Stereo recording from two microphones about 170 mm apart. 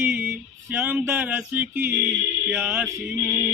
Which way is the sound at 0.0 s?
10° right (ahead or behind).